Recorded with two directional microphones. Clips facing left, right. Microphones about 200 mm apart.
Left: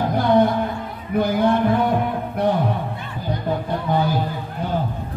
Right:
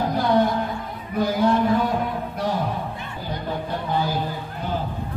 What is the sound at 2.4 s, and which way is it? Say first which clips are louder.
Speech: left 7 dB; 60° left (ahead or behind).